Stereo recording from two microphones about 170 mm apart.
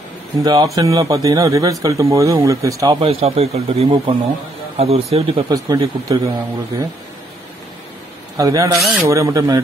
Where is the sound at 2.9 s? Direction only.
35° right (ahead or behind).